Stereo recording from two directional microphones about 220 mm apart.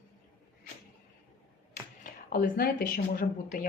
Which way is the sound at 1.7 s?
40° left (ahead or behind).